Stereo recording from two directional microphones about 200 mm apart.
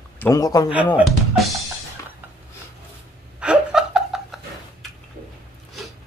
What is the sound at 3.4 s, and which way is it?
Laughter, 5° right (ahead or behind).